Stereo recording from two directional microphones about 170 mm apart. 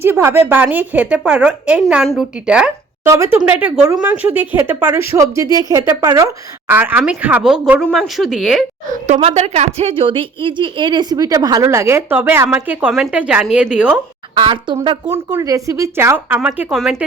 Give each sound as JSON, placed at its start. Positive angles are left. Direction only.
{"t": 0.0, "sound": "a woman's voice", "side_deg": -15}
{"t": 9.0, "sound": "a woman's voice", "side_deg": -40}
{"t": 14.3, "sound": "a woman's voice", "side_deg": -30}
{"t": 15.3, "sound": "speech", "side_deg": -20}